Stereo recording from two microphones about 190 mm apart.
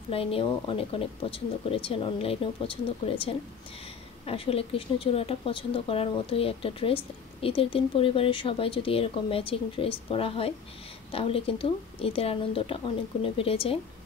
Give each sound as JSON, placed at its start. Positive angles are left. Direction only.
{"t": 0.1, "sound": "speech", "side_deg": 30}